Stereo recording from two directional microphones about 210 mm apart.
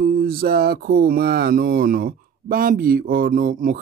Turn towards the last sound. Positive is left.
turn(degrees=-40)  # may be behind; listen again after turning